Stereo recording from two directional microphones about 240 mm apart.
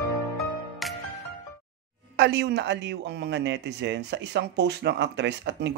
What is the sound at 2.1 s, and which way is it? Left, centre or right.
Speech, right.